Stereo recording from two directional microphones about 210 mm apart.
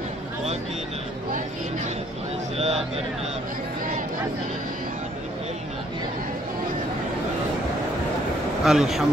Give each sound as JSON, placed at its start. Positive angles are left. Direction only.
{"t": 2.5, "sound": "speech", "side_deg": -30}
{"t": 8.6, "sound": "speech", "side_deg": 0}